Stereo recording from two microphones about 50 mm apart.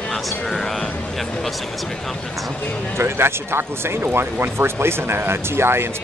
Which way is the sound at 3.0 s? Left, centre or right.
Right.